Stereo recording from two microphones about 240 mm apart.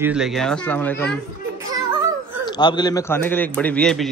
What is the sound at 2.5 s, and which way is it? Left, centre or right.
A man's voice, centre.